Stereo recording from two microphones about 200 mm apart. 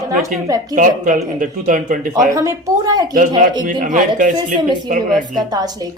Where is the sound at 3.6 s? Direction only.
40° right (ahead or behind).